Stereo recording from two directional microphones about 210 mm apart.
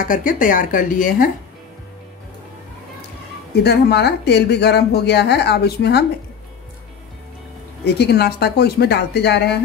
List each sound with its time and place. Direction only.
0.0 s speech: 40° left (ahead or behind)
3.6 s speech: 50° left (ahead or behind)
7.8 s speech: 50° left (ahead or behind)